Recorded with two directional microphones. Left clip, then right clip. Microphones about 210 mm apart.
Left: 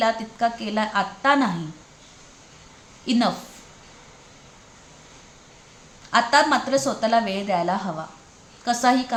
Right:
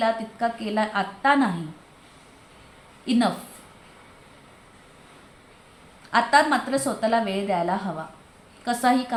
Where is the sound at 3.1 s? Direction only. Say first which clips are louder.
Left 1 dB; 15° left (ahead or behind).